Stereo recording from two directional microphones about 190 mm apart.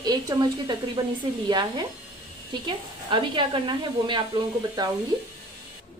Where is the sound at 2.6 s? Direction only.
25° right (ahead or behind).